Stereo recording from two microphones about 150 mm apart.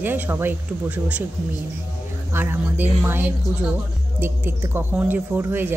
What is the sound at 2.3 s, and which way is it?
Speech, 15° right (ahead or behind).